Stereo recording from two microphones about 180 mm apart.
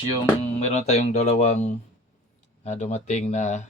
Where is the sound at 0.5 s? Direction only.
40° left (ahead or behind).